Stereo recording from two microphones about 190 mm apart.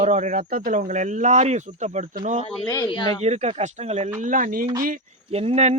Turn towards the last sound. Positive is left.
turn(degrees=-35)  # may be behind; listen again after turning